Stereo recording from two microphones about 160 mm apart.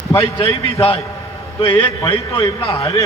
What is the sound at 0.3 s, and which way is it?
A man's voice, 35° left (ahead or behind).